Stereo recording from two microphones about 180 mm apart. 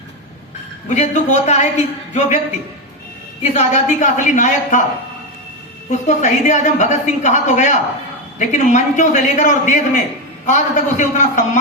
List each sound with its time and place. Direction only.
0.9 s a woman's voice: 40° left (ahead or behind)
3.4 s a man's voice: 40° left (ahead or behind)
5.9 s a woman's voice: 40° left (ahead or behind)